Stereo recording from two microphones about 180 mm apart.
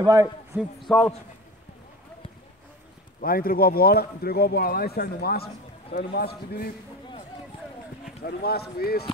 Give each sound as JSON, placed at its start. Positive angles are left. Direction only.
{"t": 0.0, "sound": "speech", "side_deg": -20}
{"t": 0.6, "sound": "speech", "side_deg": 0}
{"t": 3.2, "sound": "speech", "side_deg": 55}
{"t": 8.2, "sound": "speech", "side_deg": 60}